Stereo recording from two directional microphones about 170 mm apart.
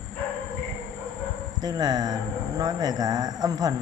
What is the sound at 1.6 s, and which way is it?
Speech, 25° right (ahead or behind).